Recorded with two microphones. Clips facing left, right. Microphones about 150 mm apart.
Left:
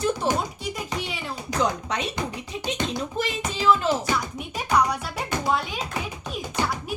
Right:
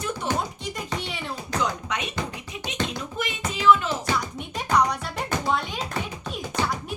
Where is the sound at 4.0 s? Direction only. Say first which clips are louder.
Even; 5° left (ahead or behind).